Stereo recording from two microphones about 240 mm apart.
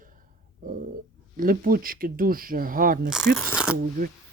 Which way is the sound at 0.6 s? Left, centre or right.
Right.